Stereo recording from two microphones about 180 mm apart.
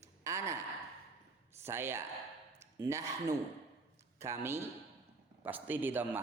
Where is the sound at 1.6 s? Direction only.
15° right (ahead or behind).